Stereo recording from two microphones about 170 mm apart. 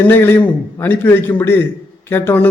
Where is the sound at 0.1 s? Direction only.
10° left (ahead or behind).